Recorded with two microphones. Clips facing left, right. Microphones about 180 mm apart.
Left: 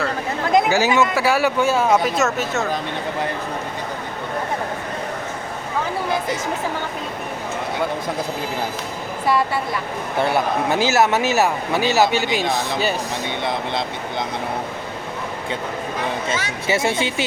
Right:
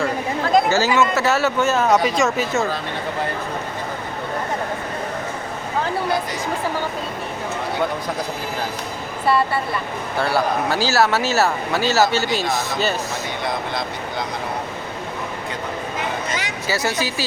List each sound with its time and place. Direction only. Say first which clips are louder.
0.5 s speech: left 1 dB; 15° left (ahead or behind); by 2.6 s centre (ahead or behind)
10.2 s speech: left 1 dB; 20° left (ahead or behind)
16.6 s speech: left 3 dB; 25° left (ahead or behind)